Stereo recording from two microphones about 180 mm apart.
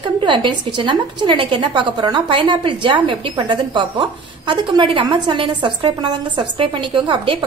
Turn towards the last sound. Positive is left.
turn(degrees=-25)  # may be behind; listen again after turning